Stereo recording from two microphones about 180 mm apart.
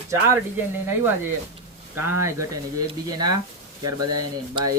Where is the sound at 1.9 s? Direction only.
15° right (ahead or behind).